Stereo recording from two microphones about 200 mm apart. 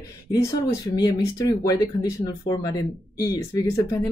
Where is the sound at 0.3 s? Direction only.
15° left (ahead or behind).